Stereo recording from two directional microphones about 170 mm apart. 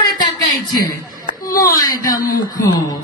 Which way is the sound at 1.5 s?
20° left (ahead or behind).